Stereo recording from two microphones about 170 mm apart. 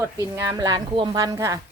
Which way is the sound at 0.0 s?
15° right (ahead or behind).